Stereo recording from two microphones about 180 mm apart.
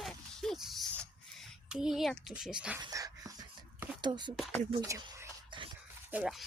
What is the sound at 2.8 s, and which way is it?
Dog, 20° right (ahead or behind).